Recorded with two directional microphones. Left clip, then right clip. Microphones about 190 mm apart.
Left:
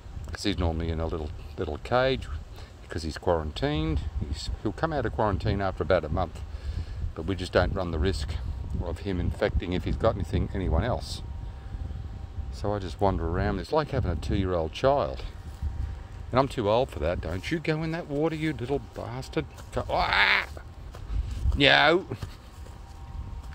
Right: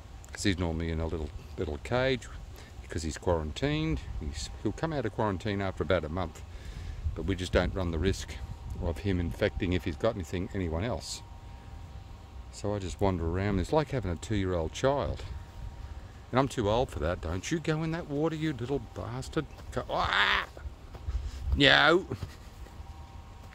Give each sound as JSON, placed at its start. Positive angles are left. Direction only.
{"t": 0.3, "sound": "speech", "side_deg": -10}
{"t": 12.5, "sound": "speech", "side_deg": -10}
{"t": 16.3, "sound": "speech", "side_deg": -10}
{"t": 21.5, "sound": "speech", "side_deg": -15}